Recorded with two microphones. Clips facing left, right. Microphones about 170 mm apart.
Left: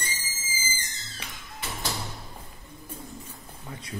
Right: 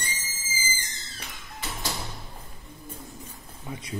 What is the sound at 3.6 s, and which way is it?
Speech, 20° right (ahead or behind).